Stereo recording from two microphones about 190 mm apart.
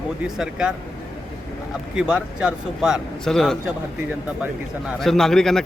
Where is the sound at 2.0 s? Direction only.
5° right (ahead or behind).